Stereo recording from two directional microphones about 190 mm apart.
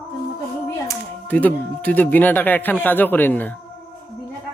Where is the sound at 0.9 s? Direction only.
10° left (ahead or behind).